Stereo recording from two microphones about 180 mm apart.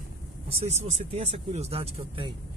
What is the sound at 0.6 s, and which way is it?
Speech, 35° right (ahead or behind).